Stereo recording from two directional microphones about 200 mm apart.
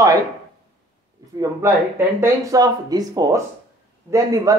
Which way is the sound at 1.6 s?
15° right (ahead or behind).